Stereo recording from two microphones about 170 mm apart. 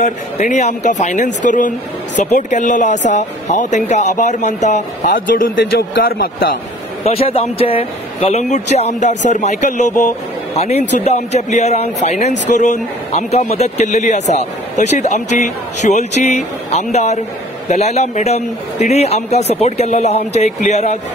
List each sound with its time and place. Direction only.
0.0 s speech: 45° left (ahead or behind); by 6.5 s 60° left (ahead or behind)
7.1 s speech: 35° left (ahead or behind)